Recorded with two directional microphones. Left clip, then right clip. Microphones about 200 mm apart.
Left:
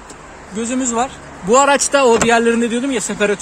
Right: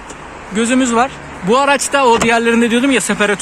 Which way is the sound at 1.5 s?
20° left (ahead or behind).